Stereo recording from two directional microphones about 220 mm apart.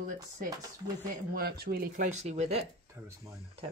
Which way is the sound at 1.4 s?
45° right (ahead or behind).